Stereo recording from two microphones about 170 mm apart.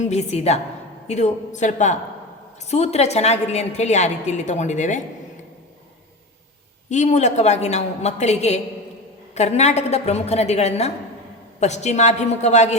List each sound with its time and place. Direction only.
0.0 s a woman's voice: 40° left (ahead or behind)
6.9 s a woman's voice: 45° left (ahead or behind)